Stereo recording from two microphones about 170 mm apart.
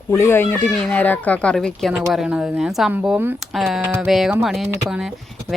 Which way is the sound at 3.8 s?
10° right (ahead or behind).